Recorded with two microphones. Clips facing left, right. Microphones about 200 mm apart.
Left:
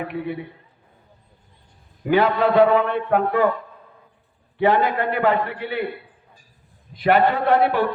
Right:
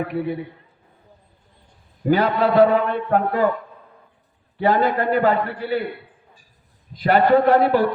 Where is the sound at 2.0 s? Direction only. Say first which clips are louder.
Even; 40° right (ahead or behind).